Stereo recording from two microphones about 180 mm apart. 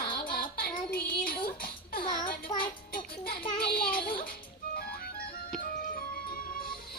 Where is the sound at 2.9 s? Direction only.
55° left (ahead or behind).